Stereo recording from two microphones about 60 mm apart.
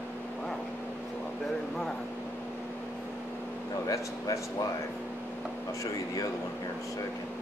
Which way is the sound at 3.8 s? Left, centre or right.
Left.